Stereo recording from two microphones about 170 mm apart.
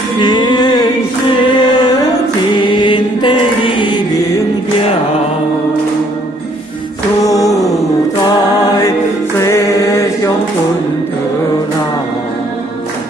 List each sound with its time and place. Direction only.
0.2 s music: 25° left (ahead or behind)
2.5 s mantra: 30° left (ahead or behind)
7.2 s a sound: 20° left (ahead or behind)
9.4 s mantra: 15° left (ahead or behind)